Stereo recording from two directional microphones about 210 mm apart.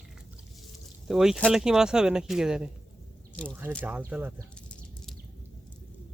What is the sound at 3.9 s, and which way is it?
Speech, 5° right (ahead or behind).